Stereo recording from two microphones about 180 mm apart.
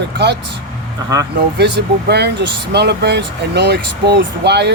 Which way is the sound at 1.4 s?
70° right (ahead or behind).